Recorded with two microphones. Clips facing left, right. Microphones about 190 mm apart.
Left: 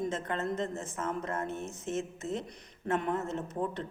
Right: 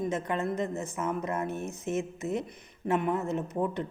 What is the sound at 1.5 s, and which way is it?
Speech, 60° right (ahead or behind).